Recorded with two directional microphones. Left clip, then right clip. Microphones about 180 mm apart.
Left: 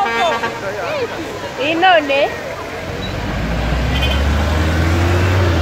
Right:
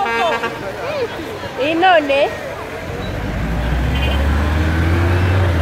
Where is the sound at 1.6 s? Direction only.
55° right (ahead or behind).